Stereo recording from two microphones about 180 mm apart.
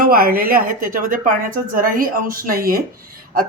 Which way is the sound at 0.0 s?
55° right (ahead or behind).